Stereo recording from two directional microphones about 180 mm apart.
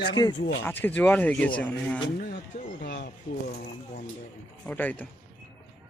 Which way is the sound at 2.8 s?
45° left (ahead or behind).